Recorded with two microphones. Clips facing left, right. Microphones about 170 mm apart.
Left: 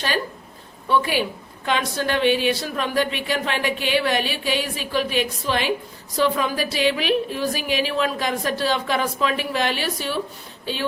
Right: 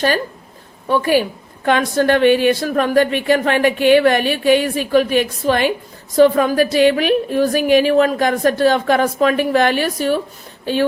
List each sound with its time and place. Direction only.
0.9 s a woman's voice: 45° right (ahead or behind)